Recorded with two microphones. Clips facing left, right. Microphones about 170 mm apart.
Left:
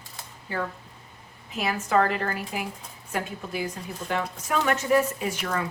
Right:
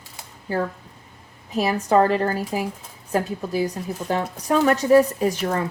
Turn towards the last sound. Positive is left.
turn(degrees=-35)  # may be behind; listen again after turning